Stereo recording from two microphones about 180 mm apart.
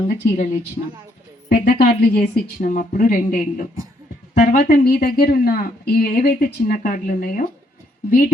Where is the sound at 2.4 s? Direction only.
50° left (ahead or behind).